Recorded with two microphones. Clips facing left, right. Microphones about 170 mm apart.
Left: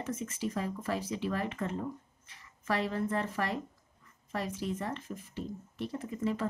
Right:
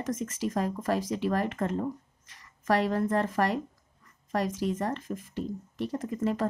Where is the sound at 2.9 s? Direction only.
45° right (ahead or behind).